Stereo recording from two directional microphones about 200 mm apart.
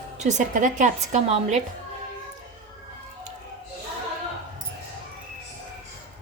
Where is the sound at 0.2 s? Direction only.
35° right (ahead or behind).